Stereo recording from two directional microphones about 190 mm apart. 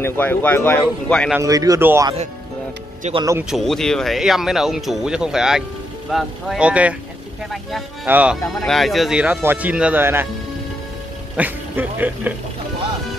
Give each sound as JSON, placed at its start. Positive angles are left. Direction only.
{"t": 0.0, "sound": "speech", "side_deg": 10}
{"t": 1.3, "sound": "speech", "side_deg": -15}
{"t": 3.0, "sound": "speech", "side_deg": -30}
{"t": 3.4, "sound": "speech", "side_deg": 0}
{"t": 11.3, "sound": "speech", "side_deg": -10}